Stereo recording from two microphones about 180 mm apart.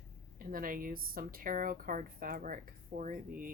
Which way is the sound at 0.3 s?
50° right (ahead or behind).